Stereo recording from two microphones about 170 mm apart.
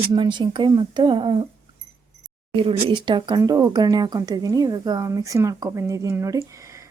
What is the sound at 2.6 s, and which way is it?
Speech, 30° right (ahead or behind).